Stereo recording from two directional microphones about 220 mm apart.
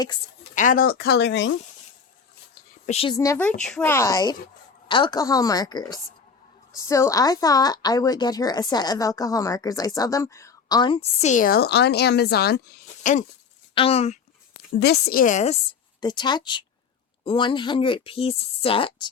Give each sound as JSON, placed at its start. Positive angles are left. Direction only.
{"t": 0.5, "sound": "speech", "side_deg": 35}
{"t": 2.8, "sound": "speech", "side_deg": 25}
{"t": 3.2, "sound": "a woman's voice", "side_deg": 10}
{"t": 14.8, "sound": "a woman's voice", "side_deg": 45}
{"t": 16.0, "sound": "speech", "side_deg": 20}